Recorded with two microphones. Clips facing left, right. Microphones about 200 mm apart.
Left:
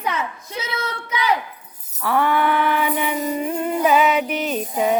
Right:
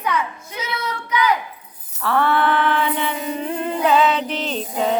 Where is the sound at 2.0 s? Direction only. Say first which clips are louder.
Even; 15° left (ahead or behind).